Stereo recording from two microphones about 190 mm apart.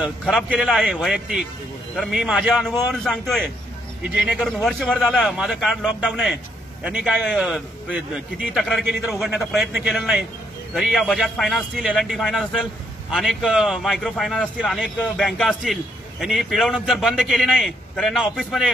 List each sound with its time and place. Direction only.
0.0 s a man's voice: centre (ahead or behind)